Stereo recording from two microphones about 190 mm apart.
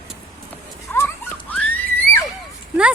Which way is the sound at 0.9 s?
10° left (ahead or behind).